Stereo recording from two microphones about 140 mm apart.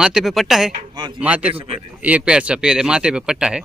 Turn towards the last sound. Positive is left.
turn(degrees=-5)  # may be behind; listen again after turning